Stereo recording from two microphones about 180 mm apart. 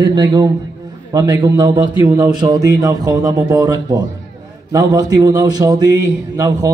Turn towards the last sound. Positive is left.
turn(degrees=-20)  # may be behind; listen again after turning